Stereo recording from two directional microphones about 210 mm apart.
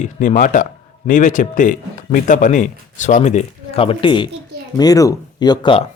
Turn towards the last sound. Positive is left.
turn(degrees=25)  # may be behind; listen again after turning